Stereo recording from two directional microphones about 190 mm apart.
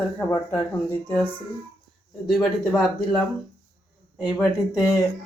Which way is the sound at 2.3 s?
Centre (ahead or behind).